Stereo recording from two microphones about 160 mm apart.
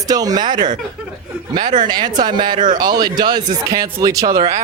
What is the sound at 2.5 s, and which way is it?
Speech, 55° right (ahead or behind).